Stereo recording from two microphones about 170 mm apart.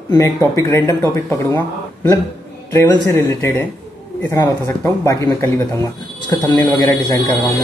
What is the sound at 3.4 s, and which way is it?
Speech, 10° left (ahead or behind).